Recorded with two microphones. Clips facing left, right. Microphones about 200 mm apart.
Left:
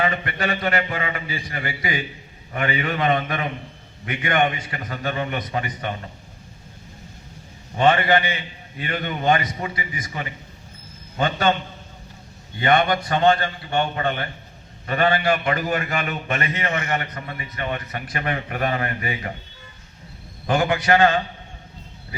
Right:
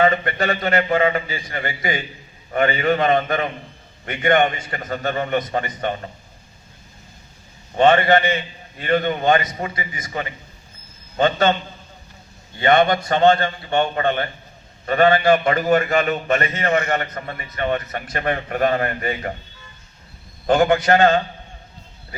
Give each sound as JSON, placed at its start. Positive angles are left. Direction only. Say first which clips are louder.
{"t": 0.0, "sound": "a man's voice", "louder": "right 5 dB", "side_deg": -40}
{"t": 7.8, "sound": "a man's voice", "louder": "right 3 dB", "side_deg": -45}
{"t": 12.6, "sound": "a man's voice", "louder": "right 3 dB", "side_deg": -45}
{"t": 20.5, "sound": "a man's voice", "louder": "right 4 dB", "side_deg": -40}